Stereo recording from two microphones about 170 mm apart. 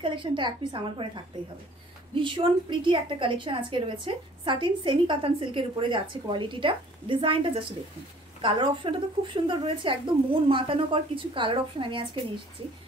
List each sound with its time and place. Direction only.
0.0 s a woman's voice: 30° right (ahead or behind)